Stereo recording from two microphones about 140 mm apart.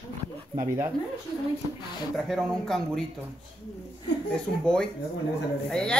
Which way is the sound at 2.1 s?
Centre (ahead or behind).